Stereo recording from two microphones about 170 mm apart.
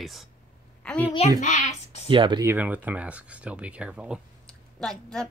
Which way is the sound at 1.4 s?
45° left (ahead or behind).